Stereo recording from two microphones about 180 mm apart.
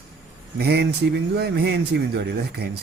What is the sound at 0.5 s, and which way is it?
Speech, 65° right (ahead or behind).